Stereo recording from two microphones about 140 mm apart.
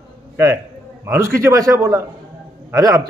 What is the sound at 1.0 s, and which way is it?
A man's voice, 20° right (ahead or behind).